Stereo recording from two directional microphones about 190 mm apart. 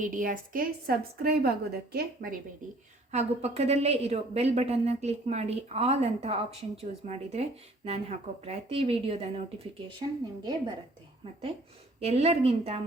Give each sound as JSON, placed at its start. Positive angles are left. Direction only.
{"t": 0.0, "sound": "a woman's voice", "side_deg": -45}
{"t": 3.1, "sound": "a woman's voice", "side_deg": -35}
{"t": 11.9, "sound": "a woman's voice", "side_deg": -30}